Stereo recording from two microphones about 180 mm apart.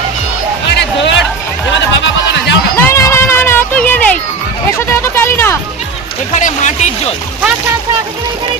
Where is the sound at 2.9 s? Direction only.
15° left (ahead or behind).